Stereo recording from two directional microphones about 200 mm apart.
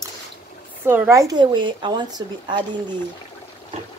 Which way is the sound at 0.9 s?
15° right (ahead or behind).